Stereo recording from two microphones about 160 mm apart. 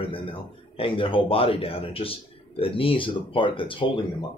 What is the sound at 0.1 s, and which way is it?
A man's voice, 35° left (ahead or behind).